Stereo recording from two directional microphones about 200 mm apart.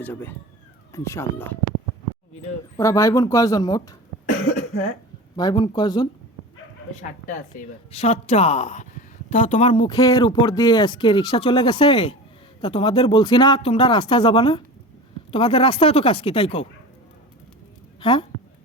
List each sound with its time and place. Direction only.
0.0 s speech: 10° left (ahead or behind)
2.7 s speech: 15° left (ahead or behind)
4.3 s cough: 40° left (ahead or behind)
5.4 s speech: 20° left (ahead or behind)
7.3 s a woman's voice: 40° left (ahead or behind)
18.0 s speech: 25° left (ahead or behind)